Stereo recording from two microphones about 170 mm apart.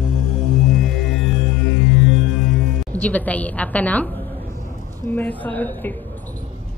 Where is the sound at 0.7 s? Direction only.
Centre (ahead or behind).